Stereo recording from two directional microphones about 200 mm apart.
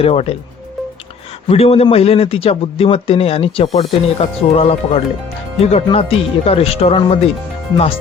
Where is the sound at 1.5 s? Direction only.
30° left (ahead or behind).